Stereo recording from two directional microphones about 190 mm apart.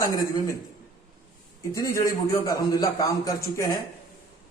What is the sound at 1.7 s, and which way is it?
A man's voice, 15° left (ahead or behind).